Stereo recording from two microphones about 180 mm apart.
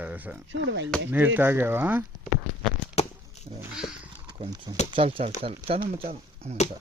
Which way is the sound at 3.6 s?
5° right (ahead or behind).